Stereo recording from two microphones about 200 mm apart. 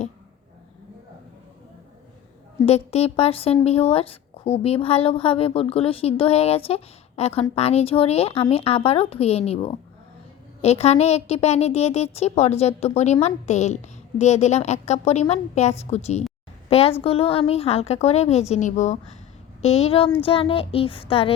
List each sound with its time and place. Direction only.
2.6 s a woman's voice: 30° left (ahead or behind)